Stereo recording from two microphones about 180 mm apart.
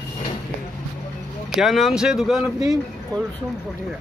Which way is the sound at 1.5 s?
Centre (ahead or behind).